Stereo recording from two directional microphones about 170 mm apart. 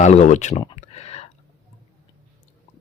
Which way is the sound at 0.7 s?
40° left (ahead or behind).